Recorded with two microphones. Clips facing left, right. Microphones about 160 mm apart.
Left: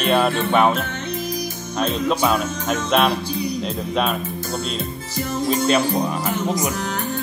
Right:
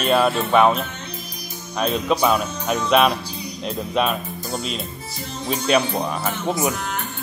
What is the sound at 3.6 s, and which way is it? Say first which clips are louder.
Speech: right 5 dB; centre (ahead or behind).